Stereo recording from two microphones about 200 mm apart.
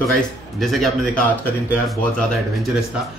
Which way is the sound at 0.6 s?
Centre (ahead or behind).